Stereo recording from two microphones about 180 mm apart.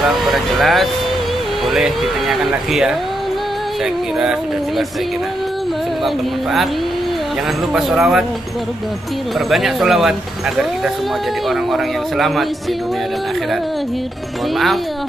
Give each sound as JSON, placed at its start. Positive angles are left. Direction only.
{"t": 0.3, "sound": "speech", "side_deg": 0}
{"t": 4.2, "sound": "speech", "side_deg": -5}
{"t": 7.7, "sound": "speech", "side_deg": -5}
{"t": 9.5, "sound": "speech", "side_deg": 0}
{"t": 11.4, "sound": "speech", "side_deg": 0}